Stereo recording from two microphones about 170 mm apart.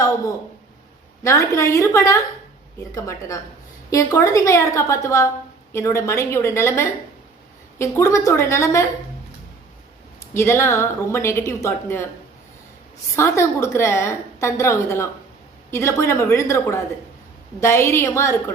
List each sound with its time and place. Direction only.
1.2 s a woman's voice: 20° left (ahead or behind)
10.3 s a woman's voice: 15° left (ahead or behind)
13.1 s a woman's voice: 15° left (ahead or behind)